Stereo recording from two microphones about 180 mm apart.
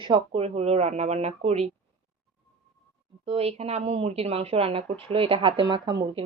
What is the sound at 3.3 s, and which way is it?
Speech, 35° right (ahead or behind).